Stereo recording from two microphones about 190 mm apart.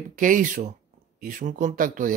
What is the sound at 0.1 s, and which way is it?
Speech, 45° right (ahead or behind).